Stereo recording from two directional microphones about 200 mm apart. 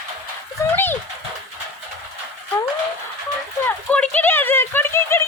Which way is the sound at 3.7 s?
5° left (ahead or behind).